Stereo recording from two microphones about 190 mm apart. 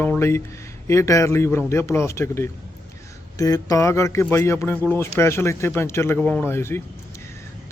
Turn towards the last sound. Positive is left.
turn(degrees=15)  # may be behind; listen again after turning